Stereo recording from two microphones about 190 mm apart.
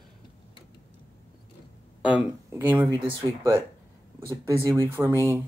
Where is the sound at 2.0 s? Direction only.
10° right (ahead or behind).